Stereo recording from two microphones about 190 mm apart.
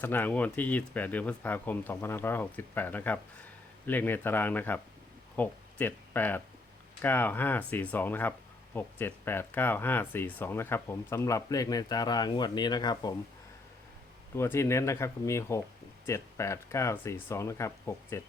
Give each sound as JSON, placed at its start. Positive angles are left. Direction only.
{"t": 0.0, "sound": "speech", "side_deg": 10}
{"t": 14.3, "sound": "speech", "side_deg": 15}